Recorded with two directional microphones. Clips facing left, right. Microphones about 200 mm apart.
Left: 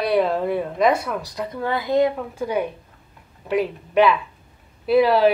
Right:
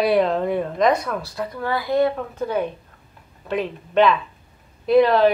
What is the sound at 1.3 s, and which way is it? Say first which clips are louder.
Speech: left 1 dB; 20° left (ahead or behind).